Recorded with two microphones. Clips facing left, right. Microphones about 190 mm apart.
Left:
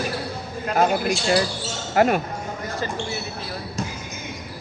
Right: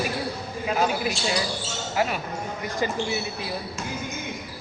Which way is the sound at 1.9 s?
55° left (ahead or behind).